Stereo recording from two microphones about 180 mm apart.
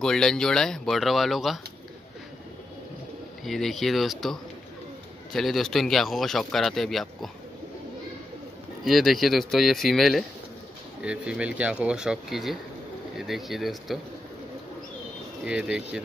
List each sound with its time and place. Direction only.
0.0 s speech: 5° left (ahead or behind)
3.4 s speech: centre (ahead or behind)
8.8 s speech: centre (ahead or behind)
15.4 s speech: 5° right (ahead or behind)